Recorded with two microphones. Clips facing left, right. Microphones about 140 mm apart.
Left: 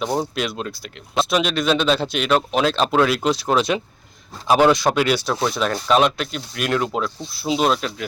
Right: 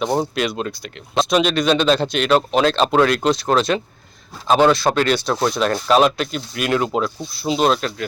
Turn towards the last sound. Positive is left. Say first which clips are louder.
# right 2 dB
turn(degrees=5)  # may be behind; listen again after turning